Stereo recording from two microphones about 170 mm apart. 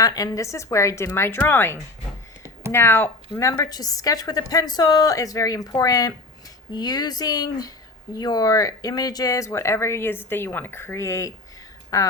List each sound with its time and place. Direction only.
0.0 s a woman's voice: 20° left (ahead or behind)